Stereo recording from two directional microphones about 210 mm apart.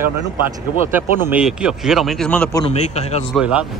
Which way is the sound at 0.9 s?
10° right (ahead or behind).